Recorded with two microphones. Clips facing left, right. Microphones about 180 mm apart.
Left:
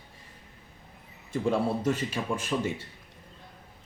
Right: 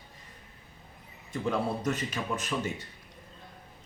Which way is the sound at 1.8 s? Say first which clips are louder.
Left 3 dB; 30° left (ahead or behind).